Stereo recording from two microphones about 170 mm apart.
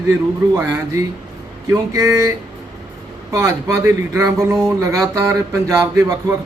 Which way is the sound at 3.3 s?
20° right (ahead or behind).